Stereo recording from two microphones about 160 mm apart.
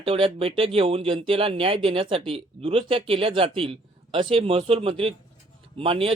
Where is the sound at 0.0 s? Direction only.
35° right (ahead or behind).